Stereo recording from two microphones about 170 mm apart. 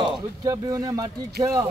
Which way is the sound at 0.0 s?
20° right (ahead or behind).